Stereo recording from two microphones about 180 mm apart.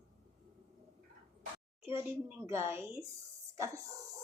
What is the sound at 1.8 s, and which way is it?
A woman's voice, 15° right (ahead or behind).